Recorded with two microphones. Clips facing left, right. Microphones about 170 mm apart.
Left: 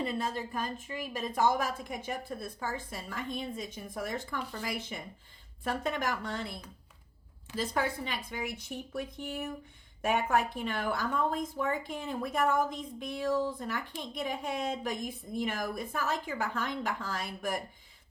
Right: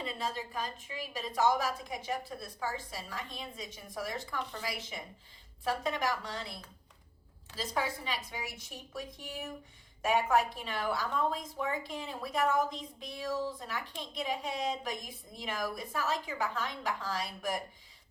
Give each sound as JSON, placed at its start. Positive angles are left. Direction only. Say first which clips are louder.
{"t": 0.0, "sound": "a woman's voice", "louder": "left 4 dB", "side_deg": 50}